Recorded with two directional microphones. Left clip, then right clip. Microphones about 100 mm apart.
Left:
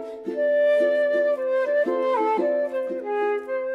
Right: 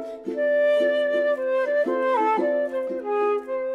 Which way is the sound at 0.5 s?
45° right (ahead or behind).